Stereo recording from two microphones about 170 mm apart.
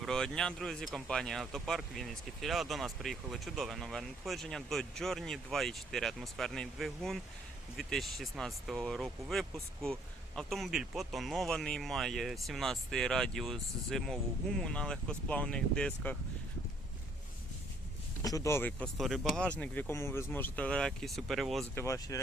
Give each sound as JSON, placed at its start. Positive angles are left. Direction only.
{"t": 0.0, "sound": "speech", "side_deg": 5}
{"t": 18.2, "sound": "speech", "side_deg": 20}
{"t": 18.9, "sound": "speech", "side_deg": 0}
{"t": 21.8, "sound": "speech", "side_deg": 20}